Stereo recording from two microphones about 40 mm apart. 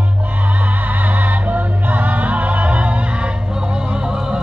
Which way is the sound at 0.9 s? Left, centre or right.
Right.